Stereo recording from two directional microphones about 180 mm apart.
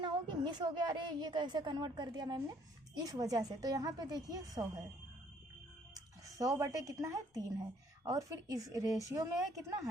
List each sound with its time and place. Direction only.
0.0 s a woman's voice: 25° right (ahead or behind)
5.9 s a woman's voice: 20° right (ahead or behind)